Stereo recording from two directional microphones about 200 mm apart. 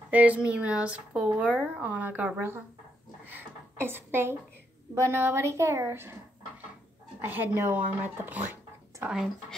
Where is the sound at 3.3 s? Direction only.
10° right (ahead or behind).